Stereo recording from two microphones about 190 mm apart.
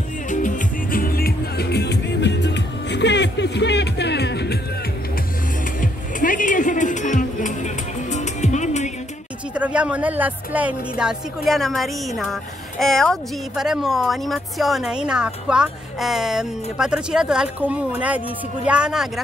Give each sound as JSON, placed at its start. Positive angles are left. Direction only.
{"t": 0.3, "sound": "music", "side_deg": 45}
{"t": 5.8, "sound": "music", "side_deg": 45}
{"t": 9.5, "sound": "a woman's voice", "side_deg": -5}